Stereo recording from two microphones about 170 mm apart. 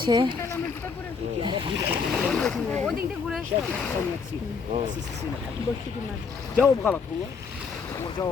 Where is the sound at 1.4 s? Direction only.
30° right (ahead or behind).